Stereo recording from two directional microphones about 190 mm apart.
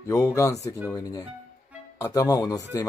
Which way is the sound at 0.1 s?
15° left (ahead or behind).